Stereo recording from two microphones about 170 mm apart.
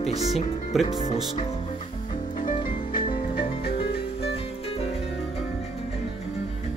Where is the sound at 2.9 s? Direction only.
30° left (ahead or behind).